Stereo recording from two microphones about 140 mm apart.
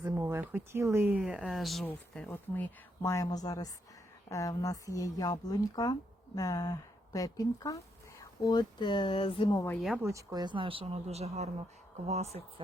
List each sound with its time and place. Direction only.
0.0 s speech: 20° right (ahead or behind); by 2.3 s centre (ahead or behind)
2.3 s speech: 20° left (ahead or behind); by 9.6 s 40° left (ahead or behind)
10.0 s speech: 20° right (ahead or behind); by 12.6 s 50° right (ahead or behind)